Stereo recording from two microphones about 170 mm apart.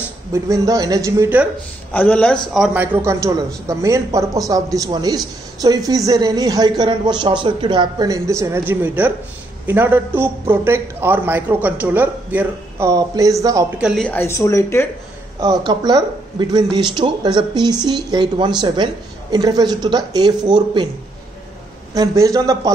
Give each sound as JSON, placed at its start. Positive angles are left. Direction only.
{"t": 0.3, "sound": "a man's voice", "side_deg": -20}
{"t": 1.9, "sound": "a man's voice", "side_deg": 10}
{"t": 13.7, "sound": "speech", "side_deg": -5}
{"t": 14.0, "sound": "speech", "side_deg": 15}
{"t": 15.4, "sound": "a woman's voice", "side_deg": -25}
{"t": 21.9, "sound": "a woman's voice", "side_deg": -20}